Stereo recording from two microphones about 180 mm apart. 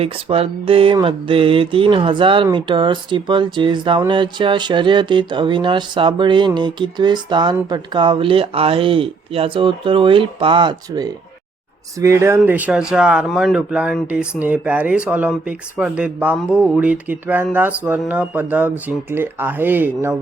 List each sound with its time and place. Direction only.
0.0 s speech: 30° right (ahead or behind); by 20.1 s 10° right (ahead or behind)